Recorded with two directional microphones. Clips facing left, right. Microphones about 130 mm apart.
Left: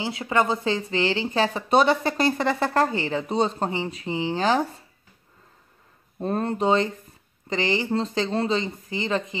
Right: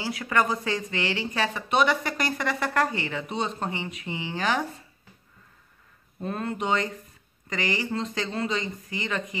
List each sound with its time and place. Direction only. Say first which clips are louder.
0.0 s speech: left 2 dB; 25° left (ahead or behind)
6.1 s speech: left 5 dB; 35° left (ahead or behind)